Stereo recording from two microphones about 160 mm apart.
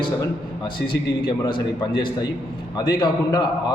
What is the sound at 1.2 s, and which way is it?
A man's voice, 30° left (ahead or behind).